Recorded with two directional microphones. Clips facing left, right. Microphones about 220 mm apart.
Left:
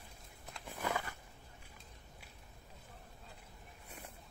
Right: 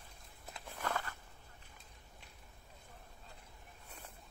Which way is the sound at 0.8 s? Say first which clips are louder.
Left 1 dB; 10° left (ahead or behind).